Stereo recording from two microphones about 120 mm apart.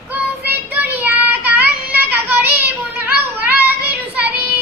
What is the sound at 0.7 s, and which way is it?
Child singing, 15° right (ahead or behind).